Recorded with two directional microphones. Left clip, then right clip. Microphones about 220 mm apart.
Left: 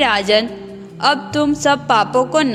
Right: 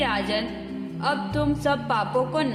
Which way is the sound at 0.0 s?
35° left (ahead or behind).